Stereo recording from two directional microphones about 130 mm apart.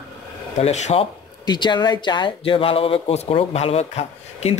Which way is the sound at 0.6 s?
55° left (ahead or behind).